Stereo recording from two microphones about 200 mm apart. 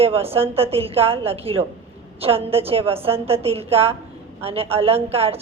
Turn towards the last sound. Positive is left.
turn(degrees=-30)  # may be behind; listen again after turning